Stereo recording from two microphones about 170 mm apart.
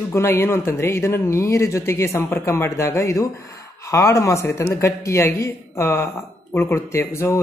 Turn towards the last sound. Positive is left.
turn(degrees=15)  # may be behind; listen again after turning